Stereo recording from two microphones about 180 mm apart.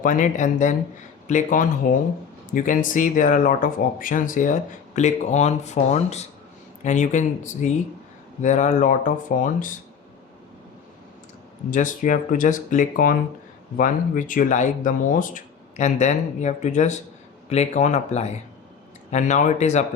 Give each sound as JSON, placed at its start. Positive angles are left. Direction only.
{"t": 0.0, "sound": "speech", "side_deg": 45}
{"t": 11.7, "sound": "speech", "side_deg": 45}